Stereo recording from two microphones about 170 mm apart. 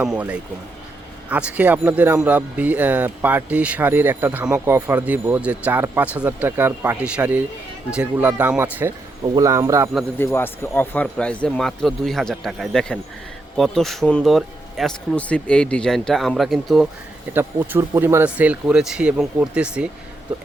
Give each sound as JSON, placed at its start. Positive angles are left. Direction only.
{"t": 0.0, "sound": "speech", "side_deg": -10}
{"t": 10.2, "sound": "speech", "side_deg": 15}
{"t": 17.7, "sound": "speech", "side_deg": -15}